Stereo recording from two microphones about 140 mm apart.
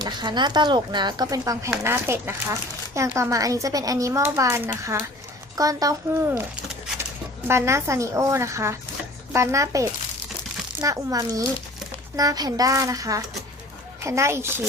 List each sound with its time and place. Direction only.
0.0 s speech: 30° right (ahead or behind)
7.4 s speech: 20° right (ahead or behind)